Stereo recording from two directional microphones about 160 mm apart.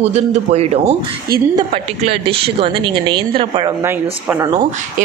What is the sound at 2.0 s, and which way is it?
A man's voice, 35° right (ahead or behind).